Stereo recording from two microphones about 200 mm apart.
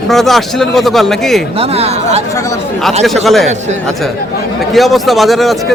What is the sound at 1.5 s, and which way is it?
Speech, 30° right (ahead or behind).